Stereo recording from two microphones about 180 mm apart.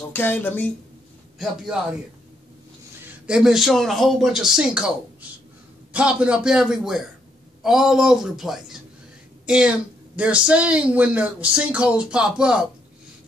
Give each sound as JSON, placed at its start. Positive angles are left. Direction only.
{"t": 0.1, "sound": "speech", "side_deg": 10}
{"t": 1.4, "sound": "speech", "side_deg": 0}
{"t": 3.3, "sound": "speech", "side_deg": -5}
{"t": 5.9, "sound": "speech", "side_deg": -5}